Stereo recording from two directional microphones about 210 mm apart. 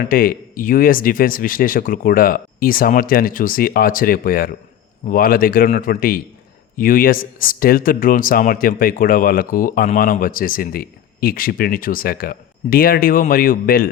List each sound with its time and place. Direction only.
0.0 s speech: 45° left (ahead or behind)